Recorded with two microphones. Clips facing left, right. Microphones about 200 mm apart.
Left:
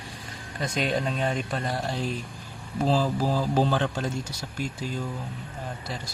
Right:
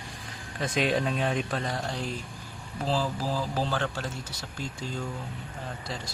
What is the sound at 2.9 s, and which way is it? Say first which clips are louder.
Speech: left 4 dB; 15° left (ahead or behind).